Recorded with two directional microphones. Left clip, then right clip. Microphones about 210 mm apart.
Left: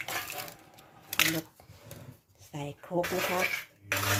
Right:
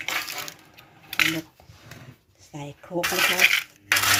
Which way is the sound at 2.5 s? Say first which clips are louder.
Right 2 dB; centre (ahead or behind).